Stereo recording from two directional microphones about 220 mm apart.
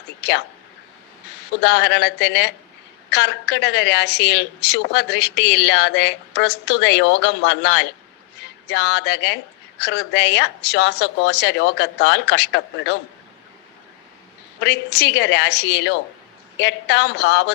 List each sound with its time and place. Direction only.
0.2 s speech: 50° left (ahead or behind)
1.6 s speech: 50° left (ahead or behind)
14.6 s speech: 50° left (ahead or behind)